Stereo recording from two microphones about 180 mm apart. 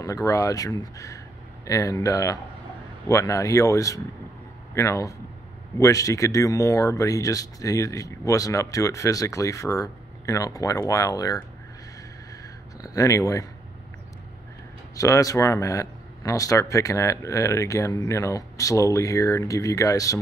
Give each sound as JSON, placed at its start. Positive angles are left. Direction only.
{"t": 0.0, "sound": "speech", "side_deg": 20}
{"t": 12.8, "sound": "speech", "side_deg": 20}
{"t": 15.0, "sound": "speech", "side_deg": 20}